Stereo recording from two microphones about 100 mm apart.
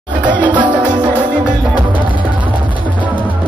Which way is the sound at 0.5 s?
50° right (ahead or behind).